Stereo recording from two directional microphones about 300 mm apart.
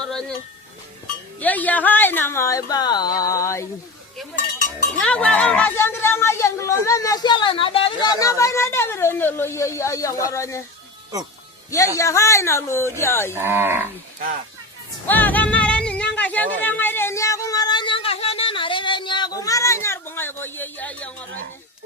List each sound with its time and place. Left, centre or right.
0.0 s music: centre
1.4 s speech: centre
4.9 s speech: centre
11.9 s speech: centre
13.3 s speech: centre
15.0 s music: centre